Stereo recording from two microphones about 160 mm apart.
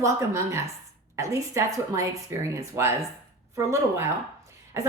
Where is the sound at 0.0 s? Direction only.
20° right (ahead or behind).